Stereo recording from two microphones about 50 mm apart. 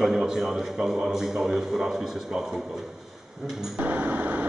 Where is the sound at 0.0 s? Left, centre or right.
Centre.